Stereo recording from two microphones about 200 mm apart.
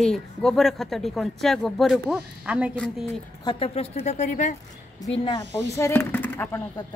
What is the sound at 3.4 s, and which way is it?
Speech, 30° left (ahead or behind).